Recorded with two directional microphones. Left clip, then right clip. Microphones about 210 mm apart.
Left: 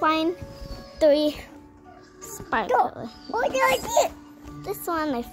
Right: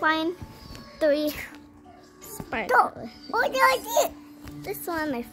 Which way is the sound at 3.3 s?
35° right (ahead or behind).